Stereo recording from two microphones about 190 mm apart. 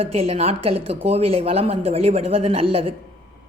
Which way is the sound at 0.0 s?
35° right (ahead or behind).